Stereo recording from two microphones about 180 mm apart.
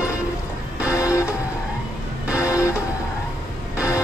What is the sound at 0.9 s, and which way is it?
Music, 15° left (ahead or behind).